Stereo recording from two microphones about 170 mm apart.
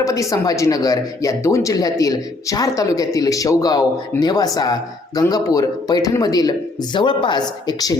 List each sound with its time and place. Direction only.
0.0 s speech: 20° left (ahead or behind)